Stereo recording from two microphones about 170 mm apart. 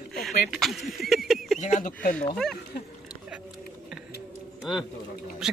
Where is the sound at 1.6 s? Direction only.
45° left (ahead or behind).